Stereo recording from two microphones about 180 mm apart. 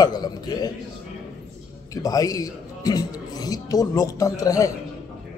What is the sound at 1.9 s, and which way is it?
A man's voice, 20° left (ahead or behind).